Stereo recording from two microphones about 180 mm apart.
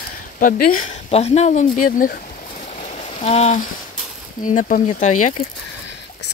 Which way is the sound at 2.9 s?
40° left (ahead or behind).